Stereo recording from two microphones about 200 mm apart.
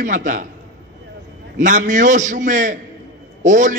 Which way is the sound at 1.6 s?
40° right (ahead or behind).